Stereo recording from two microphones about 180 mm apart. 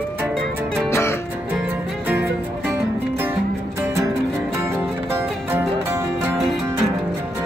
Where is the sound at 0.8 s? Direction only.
15° left (ahead or behind).